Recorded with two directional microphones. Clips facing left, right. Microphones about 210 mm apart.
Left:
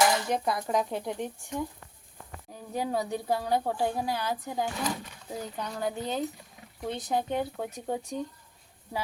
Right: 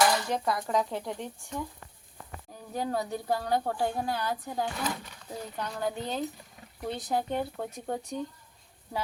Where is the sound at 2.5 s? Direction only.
10° left (ahead or behind).